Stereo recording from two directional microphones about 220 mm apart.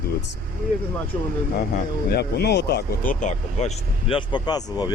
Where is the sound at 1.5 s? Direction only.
45° left (ahead or behind).